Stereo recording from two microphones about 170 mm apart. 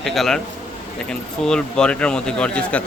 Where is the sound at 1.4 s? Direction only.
5° left (ahead or behind).